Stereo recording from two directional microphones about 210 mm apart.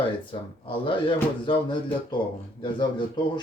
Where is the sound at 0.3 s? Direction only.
25° left (ahead or behind).